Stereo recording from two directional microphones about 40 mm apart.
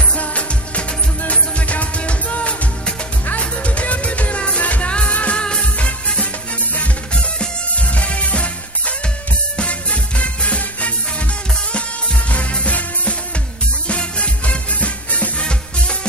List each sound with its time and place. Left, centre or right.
0.1 s music: left
7.3 s music: left
12.3 s music: left
15.4 s music: left